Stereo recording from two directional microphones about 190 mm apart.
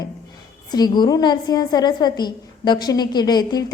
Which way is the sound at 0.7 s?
20° left (ahead or behind).